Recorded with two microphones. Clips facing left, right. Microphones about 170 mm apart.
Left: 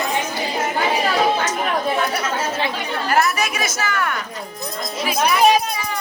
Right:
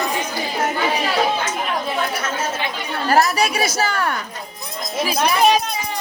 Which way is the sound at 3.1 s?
35° right (ahead or behind).